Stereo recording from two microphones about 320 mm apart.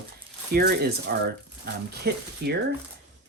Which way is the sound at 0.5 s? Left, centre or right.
Right.